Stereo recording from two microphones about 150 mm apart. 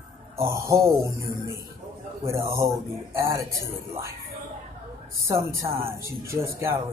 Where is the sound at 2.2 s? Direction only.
20° right (ahead or behind).